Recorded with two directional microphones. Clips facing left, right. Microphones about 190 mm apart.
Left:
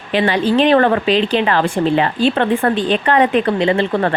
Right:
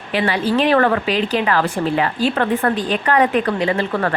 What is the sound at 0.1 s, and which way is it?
Speech, 25° left (ahead or behind).